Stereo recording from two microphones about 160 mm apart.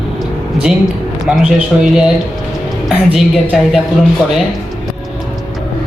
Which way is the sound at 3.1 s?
5° right (ahead or behind).